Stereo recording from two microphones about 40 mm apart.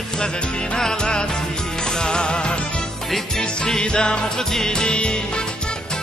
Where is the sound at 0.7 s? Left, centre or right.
Centre.